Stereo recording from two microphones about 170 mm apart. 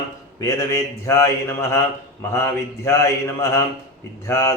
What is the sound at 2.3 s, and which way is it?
Speech, 15° left (ahead or behind).